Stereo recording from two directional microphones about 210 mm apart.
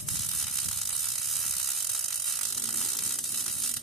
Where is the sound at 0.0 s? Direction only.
Centre (ahead or behind).